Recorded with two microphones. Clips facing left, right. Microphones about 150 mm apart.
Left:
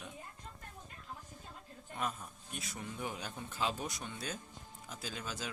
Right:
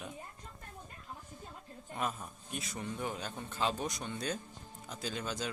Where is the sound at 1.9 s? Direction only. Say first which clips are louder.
Right 2 dB; centre (ahead or behind).